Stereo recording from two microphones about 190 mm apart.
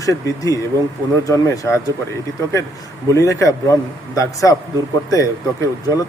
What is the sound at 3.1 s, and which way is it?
Speech, 15° left (ahead or behind).